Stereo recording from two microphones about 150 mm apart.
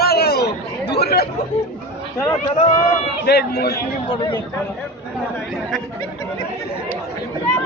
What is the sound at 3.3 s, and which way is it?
Speech, 90° left.